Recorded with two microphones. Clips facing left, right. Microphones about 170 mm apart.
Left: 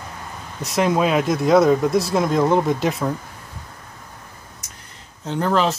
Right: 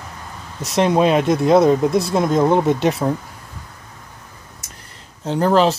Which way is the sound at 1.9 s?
Centre (ahead or behind).